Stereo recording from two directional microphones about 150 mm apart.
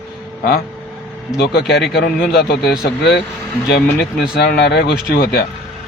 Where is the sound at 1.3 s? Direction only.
90° left.